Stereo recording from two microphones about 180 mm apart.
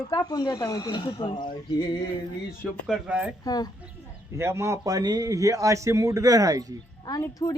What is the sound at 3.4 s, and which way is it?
Speech, 20° left (ahead or behind).